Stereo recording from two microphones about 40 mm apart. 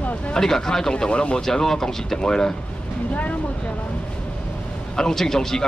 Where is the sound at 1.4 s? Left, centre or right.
Centre.